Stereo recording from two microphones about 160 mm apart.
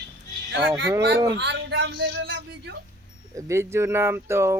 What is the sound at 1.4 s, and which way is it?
Speech, 90° right.